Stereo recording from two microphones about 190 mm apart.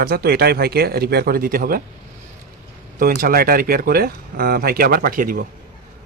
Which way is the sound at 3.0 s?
45° right (ahead or behind).